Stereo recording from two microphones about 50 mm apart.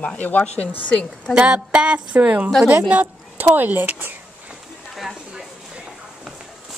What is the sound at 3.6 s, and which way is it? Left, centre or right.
Speech, right.